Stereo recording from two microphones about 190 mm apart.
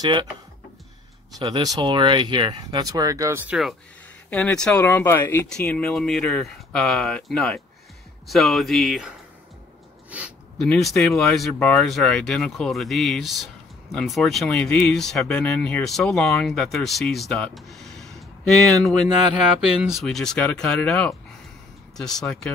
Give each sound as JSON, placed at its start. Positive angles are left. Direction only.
{"t": 0.0, "sound": "speech", "side_deg": -25}
{"t": 1.4, "sound": "speech", "side_deg": -20}
{"t": 4.3, "sound": "speech", "side_deg": 5}
{"t": 10.1, "sound": "a sound", "side_deg": -5}
{"t": 10.7, "sound": "speech", "side_deg": 0}